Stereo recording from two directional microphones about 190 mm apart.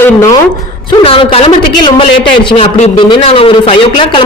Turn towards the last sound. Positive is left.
turn(degrees=25)  # may be behind; listen again after turning